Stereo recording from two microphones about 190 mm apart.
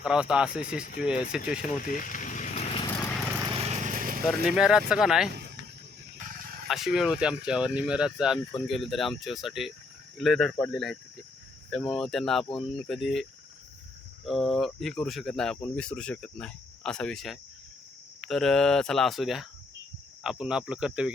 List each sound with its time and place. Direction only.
0.0 s speech: 5° right (ahead or behind)
1.8 s vehicle: 45° left (ahead or behind)
2.8 s horse: 20° left (ahead or behind)
3.5 s vehicle: 35° right (ahead or behind)
4.4 s speech: 5° right (ahead or behind)
5.3 s a sound: 60° right (ahead or behind)
6.7 s speech: centre (ahead or behind)
14.3 s speech: centre (ahead or behind)